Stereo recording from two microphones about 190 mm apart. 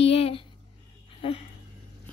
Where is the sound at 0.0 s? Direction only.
30° left (ahead or behind).